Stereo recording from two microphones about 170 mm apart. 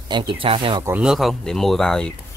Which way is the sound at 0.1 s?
30° right (ahead or behind).